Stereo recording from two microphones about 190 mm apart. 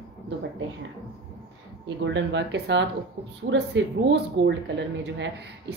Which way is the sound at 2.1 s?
65° right (ahead or behind).